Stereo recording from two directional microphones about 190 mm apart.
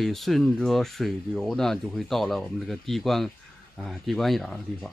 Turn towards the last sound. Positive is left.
turn(degrees=0)  # may be behind; listen again after turning